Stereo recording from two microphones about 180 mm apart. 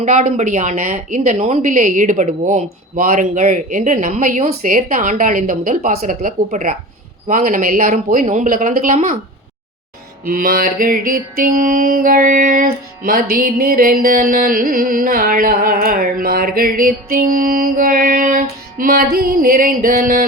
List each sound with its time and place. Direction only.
0.0 s mantra: 40° right (ahead or behind)
10.2 s mantra: 55° right (ahead or behind)
18.8 s a sound: 55° right (ahead or behind)